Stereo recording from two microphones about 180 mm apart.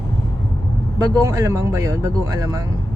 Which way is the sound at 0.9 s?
20° right (ahead or behind).